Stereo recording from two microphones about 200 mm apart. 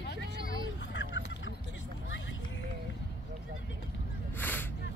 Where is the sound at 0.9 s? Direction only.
65° left (ahead or behind).